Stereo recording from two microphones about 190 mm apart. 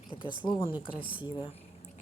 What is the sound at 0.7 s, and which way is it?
Speech, 5° right (ahead or behind).